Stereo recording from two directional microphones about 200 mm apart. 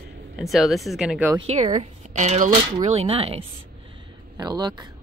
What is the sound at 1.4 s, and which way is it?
Speech, 35° right (ahead or behind).